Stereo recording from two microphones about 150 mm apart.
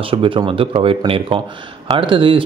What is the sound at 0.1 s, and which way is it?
Speech, 35° right (ahead or behind).